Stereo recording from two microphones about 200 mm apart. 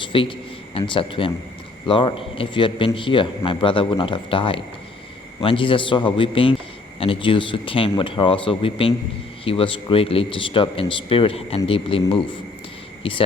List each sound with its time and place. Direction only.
0.0 s a man's voice: 25° left (ahead or behind)